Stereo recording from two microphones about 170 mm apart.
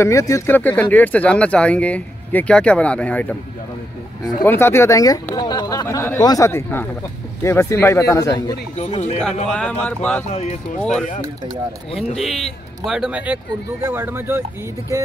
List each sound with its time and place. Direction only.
0.0 s speech: 20° left (ahead or behind)
4.5 s speech: 15° left (ahead or behind)
8.7 s speech: 40° left (ahead or behind)
9.2 s speech: 5° left (ahead or behind)
10.3 s speech: 40° left (ahead or behind)
10.8 s a man's voice: 5° left (ahead or behind)
12.2 s a man's voice: centre (ahead or behind)